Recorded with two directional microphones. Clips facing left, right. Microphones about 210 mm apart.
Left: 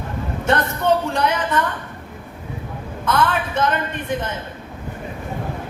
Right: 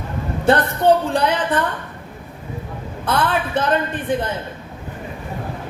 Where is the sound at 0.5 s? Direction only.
35° right (ahead or behind).